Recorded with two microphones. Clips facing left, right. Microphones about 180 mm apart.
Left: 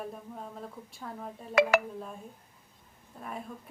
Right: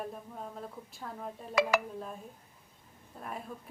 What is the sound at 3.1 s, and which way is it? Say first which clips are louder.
Speech: left 1 dB; centre (ahead or behind).